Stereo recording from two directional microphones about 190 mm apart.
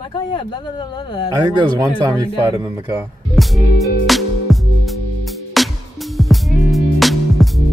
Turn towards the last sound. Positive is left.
turn(degrees=0)  # may be behind; listen again after turning